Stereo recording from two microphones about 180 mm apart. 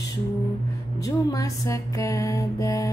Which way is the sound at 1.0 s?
20° left (ahead or behind).